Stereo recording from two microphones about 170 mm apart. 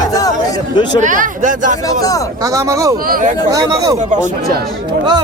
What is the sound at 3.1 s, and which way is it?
Speech, 55° right (ahead or behind).